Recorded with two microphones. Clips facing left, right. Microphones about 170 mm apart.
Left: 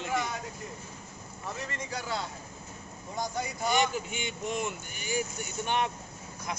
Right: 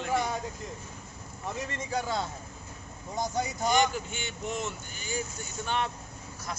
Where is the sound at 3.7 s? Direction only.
5° left (ahead or behind).